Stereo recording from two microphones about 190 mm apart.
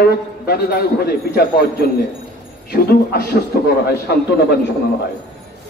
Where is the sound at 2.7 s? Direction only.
55° left (ahead or behind).